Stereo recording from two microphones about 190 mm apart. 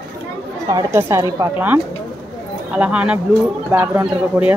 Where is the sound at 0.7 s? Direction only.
20° right (ahead or behind).